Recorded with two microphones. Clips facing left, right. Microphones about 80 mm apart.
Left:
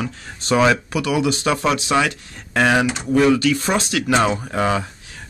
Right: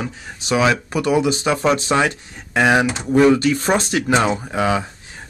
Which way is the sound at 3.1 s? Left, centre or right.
Right.